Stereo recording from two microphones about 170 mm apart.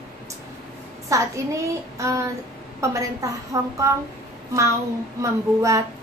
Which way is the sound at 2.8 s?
20° right (ahead or behind).